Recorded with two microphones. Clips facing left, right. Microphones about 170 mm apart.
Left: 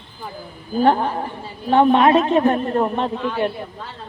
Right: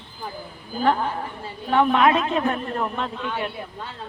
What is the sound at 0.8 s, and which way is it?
A man's voice, 35° left (ahead or behind).